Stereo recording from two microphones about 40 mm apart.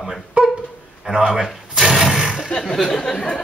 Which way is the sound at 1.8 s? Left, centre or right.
Centre.